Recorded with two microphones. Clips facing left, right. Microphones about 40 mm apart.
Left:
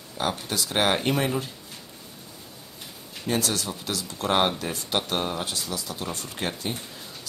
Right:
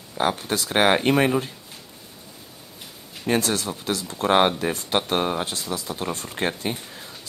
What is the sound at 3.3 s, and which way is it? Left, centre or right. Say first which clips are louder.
Speech: right 4 dB; right.